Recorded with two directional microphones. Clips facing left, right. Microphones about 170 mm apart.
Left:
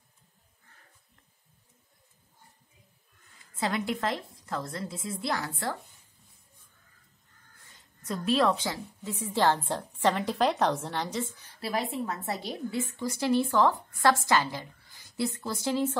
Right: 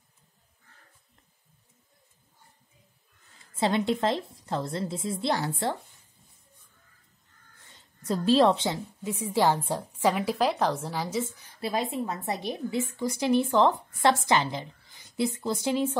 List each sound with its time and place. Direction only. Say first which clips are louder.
3.5 s a woman's voice: right 5 dB; 25° right (ahead or behind)
7.7 s a woman's voice: right 5 dB; 30° right (ahead or behind)
9.1 s a woman's voice: right 2 dB; 10° right (ahead or behind)
11.6 s a woman's voice: right 2 dB; 20° right (ahead or behind)